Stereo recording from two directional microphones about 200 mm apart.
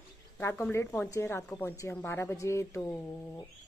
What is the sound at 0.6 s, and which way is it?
Speech, 10° left (ahead or behind).